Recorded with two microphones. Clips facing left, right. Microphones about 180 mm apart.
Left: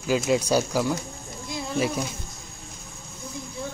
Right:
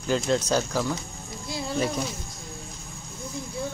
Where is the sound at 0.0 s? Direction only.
10° left (ahead or behind).